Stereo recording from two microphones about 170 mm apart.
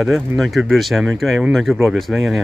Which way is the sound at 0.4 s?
Centre (ahead or behind).